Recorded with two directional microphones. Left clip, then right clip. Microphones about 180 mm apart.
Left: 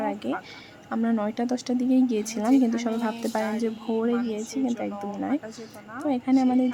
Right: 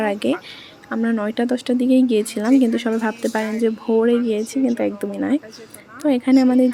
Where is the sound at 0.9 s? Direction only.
15° right (ahead or behind).